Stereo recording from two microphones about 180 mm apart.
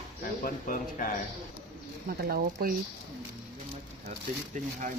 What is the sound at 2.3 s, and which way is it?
Speech, 55° right (ahead or behind).